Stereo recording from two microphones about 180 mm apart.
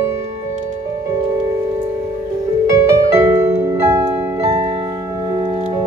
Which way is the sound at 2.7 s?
15° right (ahead or behind).